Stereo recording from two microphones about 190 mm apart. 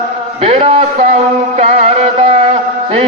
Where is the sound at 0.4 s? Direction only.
35° right (ahead or behind).